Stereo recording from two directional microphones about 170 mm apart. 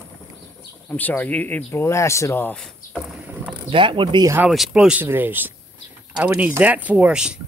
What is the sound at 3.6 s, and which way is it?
Speech, 30° right (ahead or behind).